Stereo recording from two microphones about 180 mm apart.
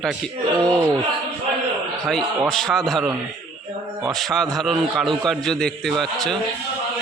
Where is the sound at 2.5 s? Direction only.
Centre (ahead or behind).